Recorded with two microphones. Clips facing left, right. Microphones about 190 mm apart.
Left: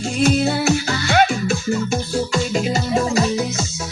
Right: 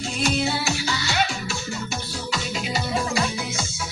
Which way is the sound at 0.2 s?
50° left (ahead or behind).